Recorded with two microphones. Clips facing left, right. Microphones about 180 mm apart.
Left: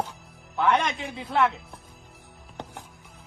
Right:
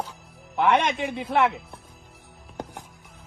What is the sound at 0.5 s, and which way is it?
Speech, 20° right (ahead or behind).